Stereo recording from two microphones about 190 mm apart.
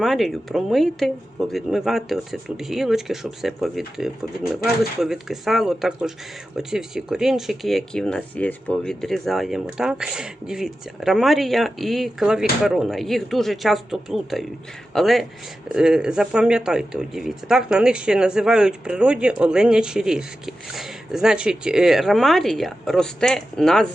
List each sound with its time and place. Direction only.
0.0 s speech: centre (ahead or behind)